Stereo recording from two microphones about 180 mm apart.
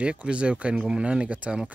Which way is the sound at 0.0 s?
5° right (ahead or behind).